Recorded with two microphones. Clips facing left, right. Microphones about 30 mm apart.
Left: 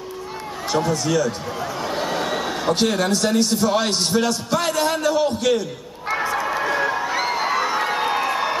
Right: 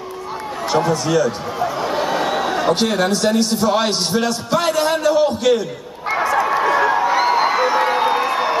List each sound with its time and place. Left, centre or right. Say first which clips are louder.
0.7 s a sound: right 3 dB; right
3.2 s a man's voice: right 2 dB; centre
6.3 s crowd: right 8 dB; centre